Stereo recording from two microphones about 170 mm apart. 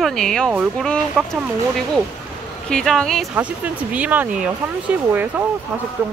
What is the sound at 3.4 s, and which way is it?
Speech, 10° right (ahead or behind).